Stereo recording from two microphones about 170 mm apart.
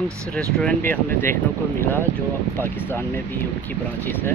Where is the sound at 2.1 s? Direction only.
10° right (ahead or behind).